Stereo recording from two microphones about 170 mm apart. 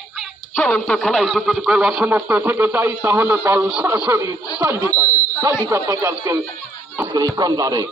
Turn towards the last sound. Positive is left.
turn(degrees=-20)  # may be behind; listen again after turning